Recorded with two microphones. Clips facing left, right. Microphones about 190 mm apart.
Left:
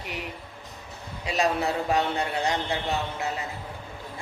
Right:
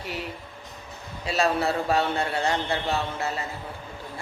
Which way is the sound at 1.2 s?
15° left (ahead or behind).